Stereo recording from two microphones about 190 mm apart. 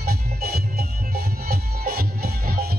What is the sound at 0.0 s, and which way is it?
Music, 55° right (ahead or behind).